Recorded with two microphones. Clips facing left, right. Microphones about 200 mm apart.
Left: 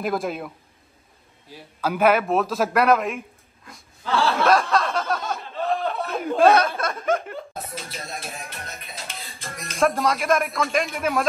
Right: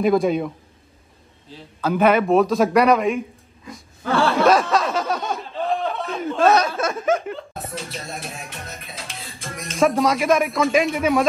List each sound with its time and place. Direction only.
0.0 s speech: centre (ahead or behind)
1.5 s speech: 10° left (ahead or behind)
4.0 s speech: 55° right (ahead or behind)
4.4 s a sound: centre (ahead or behind)
6.8 s speech: centre (ahead or behind)